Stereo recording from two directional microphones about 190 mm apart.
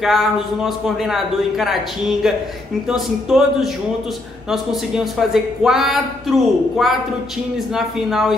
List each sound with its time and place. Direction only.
0.0 s a man's voice: centre (ahead or behind)